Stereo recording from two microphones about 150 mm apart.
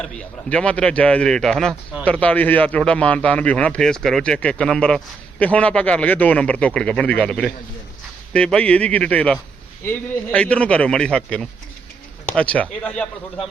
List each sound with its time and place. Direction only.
0.5 s a man's voice: 5° left (ahead or behind)